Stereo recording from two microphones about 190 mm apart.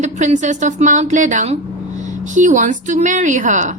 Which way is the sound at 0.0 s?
40° right (ahead or behind).